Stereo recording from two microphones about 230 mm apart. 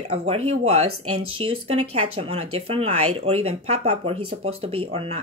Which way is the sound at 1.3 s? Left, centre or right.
Right.